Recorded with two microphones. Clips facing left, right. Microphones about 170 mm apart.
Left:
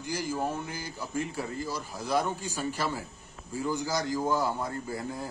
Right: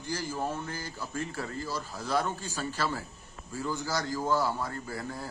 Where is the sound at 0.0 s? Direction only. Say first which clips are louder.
Left 2 dB; 15° left (ahead or behind).